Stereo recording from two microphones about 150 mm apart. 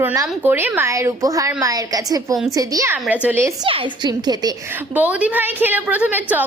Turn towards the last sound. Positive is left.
turn(degrees=-10)  # may be behind; listen again after turning